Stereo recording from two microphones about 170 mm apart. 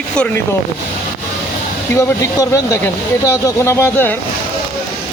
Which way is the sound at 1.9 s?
20° left (ahead or behind).